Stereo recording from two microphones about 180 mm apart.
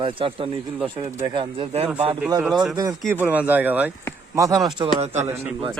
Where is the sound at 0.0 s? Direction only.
30° right (ahead or behind).